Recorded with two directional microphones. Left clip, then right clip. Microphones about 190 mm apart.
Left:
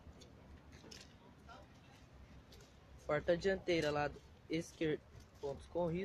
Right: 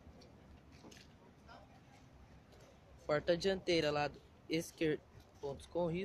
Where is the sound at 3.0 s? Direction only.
20° right (ahead or behind).